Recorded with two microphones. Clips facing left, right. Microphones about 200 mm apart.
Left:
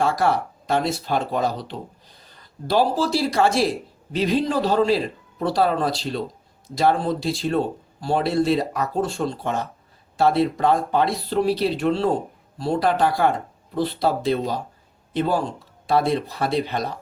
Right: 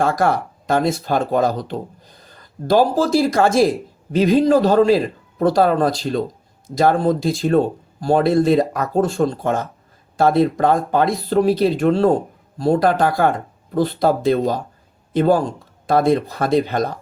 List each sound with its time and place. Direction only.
0.0 s speech: 50° right (ahead or behind)